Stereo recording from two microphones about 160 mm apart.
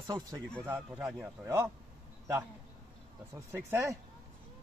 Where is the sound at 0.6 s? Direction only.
10° right (ahead or behind).